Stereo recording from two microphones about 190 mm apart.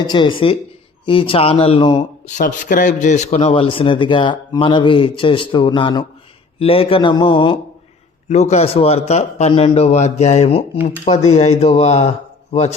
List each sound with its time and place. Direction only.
0.0 s speech: 25° left (ahead or behind)